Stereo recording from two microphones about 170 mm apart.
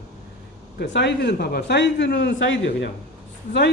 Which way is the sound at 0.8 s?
90° left.